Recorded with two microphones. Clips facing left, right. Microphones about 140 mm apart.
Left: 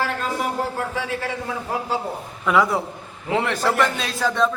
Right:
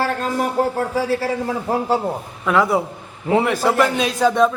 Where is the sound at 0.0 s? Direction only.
40° right (ahead or behind).